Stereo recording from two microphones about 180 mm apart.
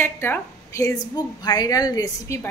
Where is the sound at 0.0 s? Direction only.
10° left (ahead or behind).